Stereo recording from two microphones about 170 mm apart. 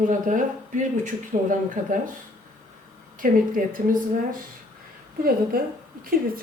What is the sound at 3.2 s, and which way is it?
A woman's voice, 55° right (ahead or behind).